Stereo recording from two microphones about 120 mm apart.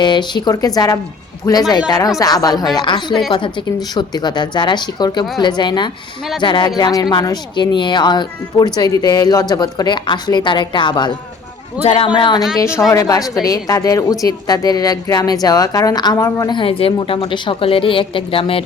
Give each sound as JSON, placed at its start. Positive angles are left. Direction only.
{"t": 0.0, "sound": "a woman's voice", "side_deg": 40}
{"t": 11.8, "sound": "a woman's voice", "side_deg": 60}
{"t": 12.5, "sound": "a woman's voice", "side_deg": 25}
{"t": 16.5, "sound": "a woman's voice", "side_deg": 45}